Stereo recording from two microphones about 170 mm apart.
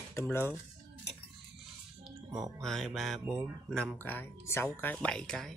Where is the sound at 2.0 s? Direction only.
20° right (ahead or behind).